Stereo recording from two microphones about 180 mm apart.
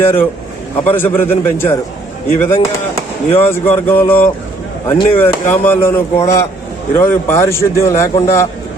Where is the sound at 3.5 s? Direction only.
10° left (ahead or behind).